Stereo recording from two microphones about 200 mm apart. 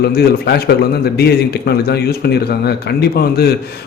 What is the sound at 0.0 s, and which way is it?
A man's voice, 50° left (ahead or behind).